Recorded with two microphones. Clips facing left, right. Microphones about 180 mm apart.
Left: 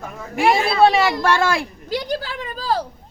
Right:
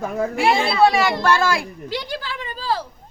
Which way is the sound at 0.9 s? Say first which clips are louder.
Left 1 dB; 25° left (ahead or behind).